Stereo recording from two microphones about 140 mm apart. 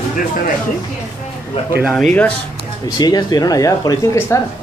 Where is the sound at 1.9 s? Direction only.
10° left (ahead or behind).